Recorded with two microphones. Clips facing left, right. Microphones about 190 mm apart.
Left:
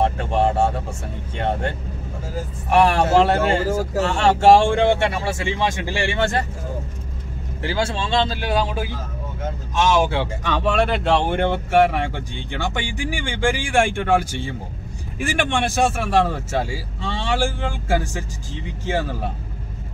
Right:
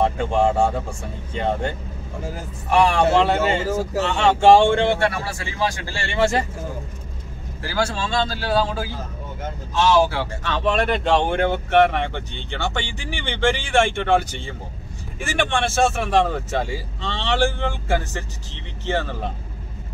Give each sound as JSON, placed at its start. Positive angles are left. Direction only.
{"t": 0.3, "sound": "speech", "side_deg": 5}
{"t": 5.1, "sound": "speech", "side_deg": 25}
{"t": 6.1, "sound": "speech", "side_deg": 0}
{"t": 7.6, "sound": "speech", "side_deg": 25}
{"t": 10.9, "sound": "speech", "side_deg": 5}